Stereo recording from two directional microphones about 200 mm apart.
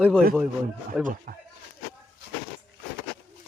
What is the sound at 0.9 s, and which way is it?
Speech, 5° right (ahead or behind).